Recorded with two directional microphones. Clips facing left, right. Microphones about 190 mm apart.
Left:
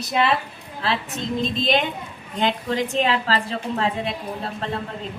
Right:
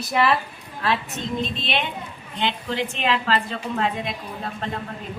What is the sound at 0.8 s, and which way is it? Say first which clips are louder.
A woman's voice: even; 35° left (ahead or behind).